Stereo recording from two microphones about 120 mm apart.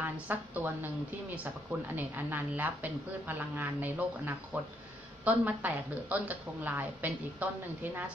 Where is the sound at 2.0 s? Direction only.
15° right (ahead or behind).